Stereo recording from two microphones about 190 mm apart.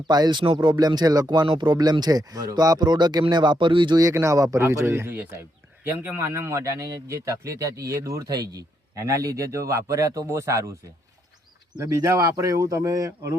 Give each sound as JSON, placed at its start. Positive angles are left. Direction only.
{"t": 0.1, "sound": "a man's voice", "side_deg": -20}
{"t": 11.8, "sound": "a man's voice", "side_deg": -15}